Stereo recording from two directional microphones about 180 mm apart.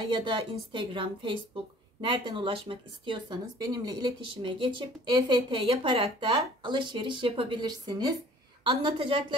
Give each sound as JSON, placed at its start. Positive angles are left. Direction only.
{"t": 0.1, "sound": "speech", "side_deg": -25}